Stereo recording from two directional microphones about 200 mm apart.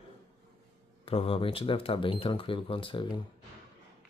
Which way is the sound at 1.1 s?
30° left (ahead or behind).